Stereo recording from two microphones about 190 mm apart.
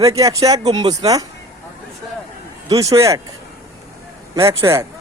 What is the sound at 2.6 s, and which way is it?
Speech, 20° right (ahead or behind).